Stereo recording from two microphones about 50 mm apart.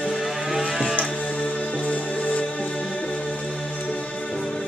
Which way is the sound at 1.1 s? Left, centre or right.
Centre.